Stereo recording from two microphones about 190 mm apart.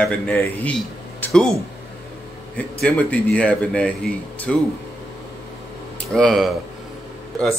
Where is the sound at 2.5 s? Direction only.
10° left (ahead or behind).